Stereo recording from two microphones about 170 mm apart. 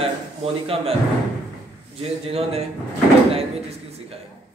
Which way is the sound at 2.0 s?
35° right (ahead or behind).